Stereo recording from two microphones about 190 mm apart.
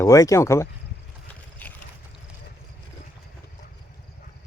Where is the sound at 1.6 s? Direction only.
10° left (ahead or behind).